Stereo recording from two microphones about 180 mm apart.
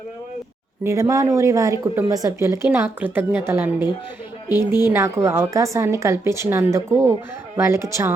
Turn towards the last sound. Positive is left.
turn(degrees=-15)  # may be behind; listen again after turning